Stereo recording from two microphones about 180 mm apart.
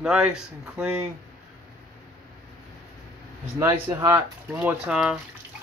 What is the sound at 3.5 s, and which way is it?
Speech, 15° right (ahead or behind).